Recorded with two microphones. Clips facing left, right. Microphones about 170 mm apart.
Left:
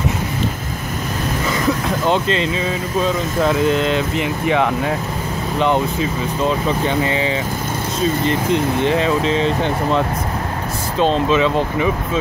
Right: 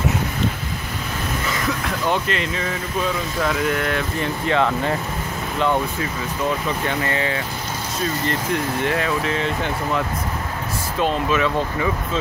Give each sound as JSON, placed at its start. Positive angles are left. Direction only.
{"t": 2.0, "sound": "speech", "side_deg": 25}
{"t": 8.8, "sound": "speech", "side_deg": 25}
{"t": 11.0, "sound": "speech", "side_deg": 25}